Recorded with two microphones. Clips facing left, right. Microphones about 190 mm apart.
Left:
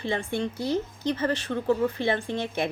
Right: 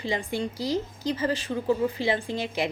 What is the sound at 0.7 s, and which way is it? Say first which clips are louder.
A woman's voice: left 1 dB; 10° right (ahead or behind).